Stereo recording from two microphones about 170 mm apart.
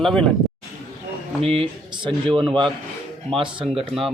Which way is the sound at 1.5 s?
35° right (ahead or behind).